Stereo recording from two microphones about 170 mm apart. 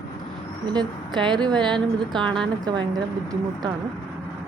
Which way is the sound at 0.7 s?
25° right (ahead or behind).